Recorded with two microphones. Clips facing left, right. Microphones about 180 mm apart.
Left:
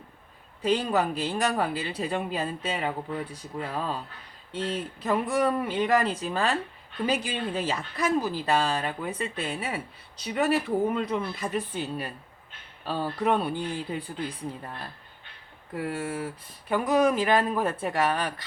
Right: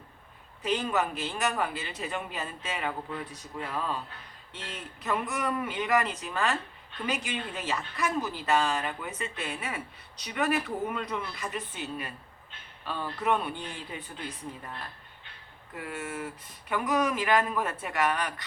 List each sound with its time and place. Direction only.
0.6 s speech: 35° left (ahead or behind)
15.9 s speech: 30° left (ahead or behind)